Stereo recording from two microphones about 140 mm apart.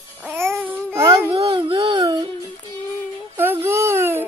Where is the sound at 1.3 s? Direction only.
40° right (ahead or behind).